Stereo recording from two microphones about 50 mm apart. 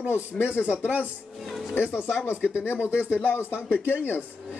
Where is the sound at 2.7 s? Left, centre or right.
Left.